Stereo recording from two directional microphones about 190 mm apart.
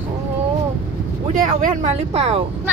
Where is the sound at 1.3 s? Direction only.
40° right (ahead or behind).